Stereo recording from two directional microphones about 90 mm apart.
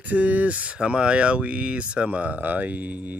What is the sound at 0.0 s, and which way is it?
Speech, 15° right (ahead or behind).